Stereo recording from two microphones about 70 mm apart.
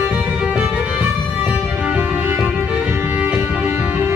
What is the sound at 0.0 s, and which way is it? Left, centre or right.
Music, centre.